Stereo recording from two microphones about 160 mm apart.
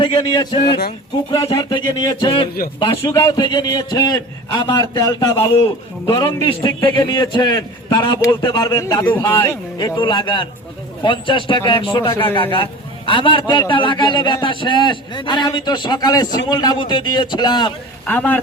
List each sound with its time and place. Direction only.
0.0 s a man's voice: 30° left (ahead or behind); by 9.6 s 15° left (ahead or behind)
9.7 s a man's voice: 25° left (ahead or behind)
18.0 s a man's voice: 10° left (ahead or behind)